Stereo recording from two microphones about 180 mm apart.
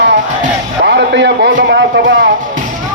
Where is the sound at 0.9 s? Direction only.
70° right (ahead or behind).